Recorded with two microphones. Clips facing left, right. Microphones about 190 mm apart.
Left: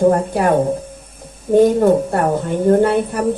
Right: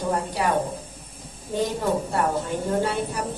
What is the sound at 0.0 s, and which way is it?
Speech, 55° left (ahead or behind).